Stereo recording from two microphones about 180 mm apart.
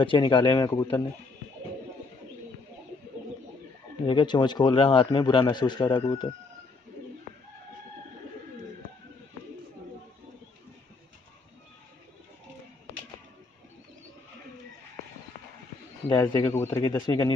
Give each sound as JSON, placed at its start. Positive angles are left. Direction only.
{"t": 0.0, "sound": "a man's voice", "side_deg": 30}
{"t": 4.1, "sound": "a man's voice", "side_deg": 25}
{"t": 16.1, "sound": "a man's voice", "side_deg": 25}